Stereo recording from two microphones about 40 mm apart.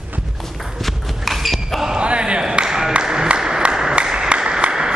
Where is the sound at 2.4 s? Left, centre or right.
Centre.